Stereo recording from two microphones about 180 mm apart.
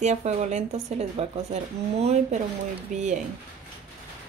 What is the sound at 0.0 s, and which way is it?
Speech, 40° right (ahead or behind).